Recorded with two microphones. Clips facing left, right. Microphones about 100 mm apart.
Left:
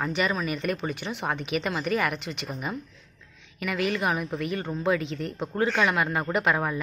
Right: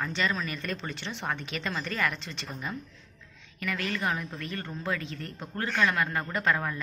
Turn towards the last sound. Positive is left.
turn(degrees=20)  # may be behind; listen again after turning